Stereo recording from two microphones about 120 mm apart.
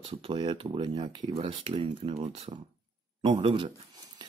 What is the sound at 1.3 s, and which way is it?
Speech, 55° right (ahead or behind).